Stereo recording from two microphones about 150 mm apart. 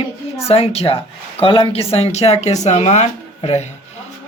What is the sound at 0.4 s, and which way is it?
Speech, 40° left (ahead or behind).